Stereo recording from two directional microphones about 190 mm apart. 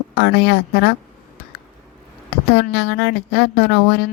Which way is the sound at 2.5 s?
65° left (ahead or behind).